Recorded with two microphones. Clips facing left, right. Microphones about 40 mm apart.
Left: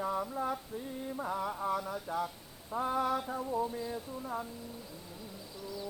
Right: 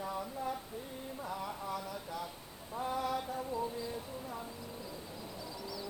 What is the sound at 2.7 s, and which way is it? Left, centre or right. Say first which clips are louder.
Speech: left 4 dB; left.